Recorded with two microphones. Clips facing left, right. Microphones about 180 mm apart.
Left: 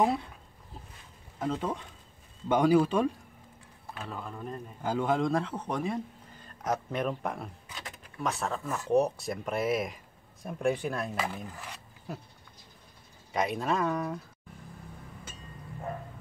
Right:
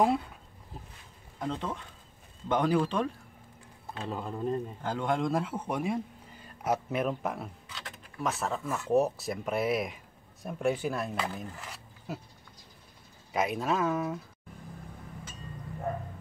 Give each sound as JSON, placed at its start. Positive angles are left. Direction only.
{"t": 0.0, "sound": "speech", "side_deg": 0}
{"t": 1.4, "sound": "speech", "side_deg": 5}
{"t": 3.9, "sound": "speech", "side_deg": -25}
{"t": 4.8, "sound": "speech", "side_deg": 5}
{"t": 13.3, "sound": "speech", "side_deg": 0}